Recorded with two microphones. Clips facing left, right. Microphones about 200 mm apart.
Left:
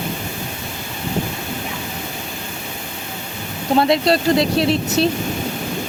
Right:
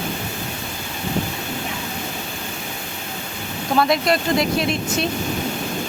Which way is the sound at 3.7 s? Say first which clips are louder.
Left 3 dB; 30° left (ahead or behind).